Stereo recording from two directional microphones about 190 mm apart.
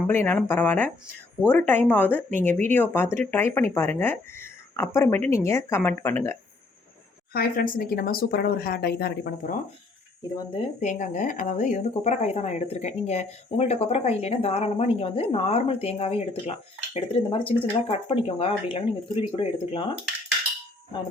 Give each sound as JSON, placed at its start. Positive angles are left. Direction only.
{"t": 0.1, "sound": "speech", "side_deg": 10}
{"t": 7.3, "sound": "speech", "side_deg": 50}
{"t": 10.5, "sound": "speech", "side_deg": 40}